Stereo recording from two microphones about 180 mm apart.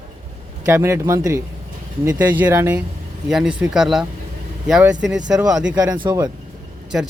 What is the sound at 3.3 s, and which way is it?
Speech, 5° right (ahead or behind).